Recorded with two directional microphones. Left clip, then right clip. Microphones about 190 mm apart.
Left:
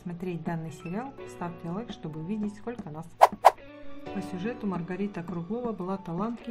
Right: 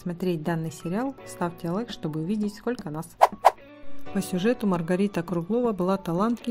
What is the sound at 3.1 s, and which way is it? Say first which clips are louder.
Speech: even; centre (ahead or behind).